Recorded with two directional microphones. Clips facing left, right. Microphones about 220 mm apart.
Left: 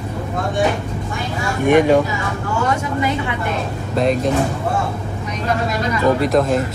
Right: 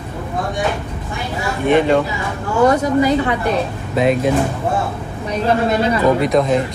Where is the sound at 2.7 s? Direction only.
40° right (ahead or behind).